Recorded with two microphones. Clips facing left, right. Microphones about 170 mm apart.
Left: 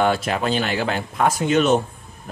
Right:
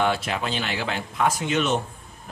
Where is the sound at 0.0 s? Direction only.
45° left (ahead or behind).